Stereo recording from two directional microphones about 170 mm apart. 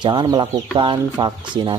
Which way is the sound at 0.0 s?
25° right (ahead or behind).